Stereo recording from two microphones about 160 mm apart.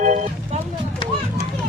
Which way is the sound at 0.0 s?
50° right (ahead or behind).